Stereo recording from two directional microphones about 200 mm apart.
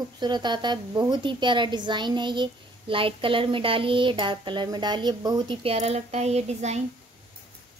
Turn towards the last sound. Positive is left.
turn(degrees=-35)  # may be behind; listen again after turning